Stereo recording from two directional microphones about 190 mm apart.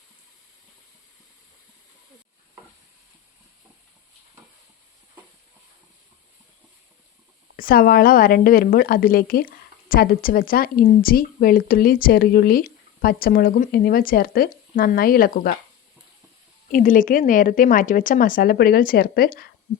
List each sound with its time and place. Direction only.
7.5 s a woman's voice: 50° left (ahead or behind)
16.7 s a woman's voice: 45° left (ahead or behind)